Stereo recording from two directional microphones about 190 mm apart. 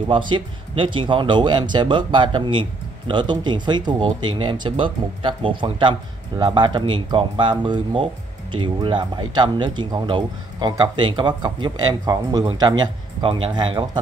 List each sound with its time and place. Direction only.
0.3 s speech: 25° right (ahead or behind)